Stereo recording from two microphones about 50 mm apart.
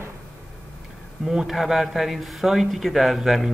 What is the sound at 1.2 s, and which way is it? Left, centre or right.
A man's voice, centre.